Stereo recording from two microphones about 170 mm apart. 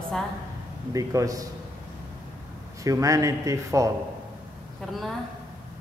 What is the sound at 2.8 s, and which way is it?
Speech, 20° right (ahead or behind).